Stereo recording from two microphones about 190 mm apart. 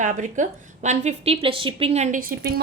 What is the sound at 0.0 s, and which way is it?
A woman's voice, 40° right (ahead or behind).